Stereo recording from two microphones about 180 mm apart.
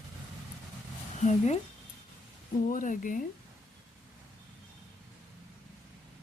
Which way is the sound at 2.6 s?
45° left (ahead or behind).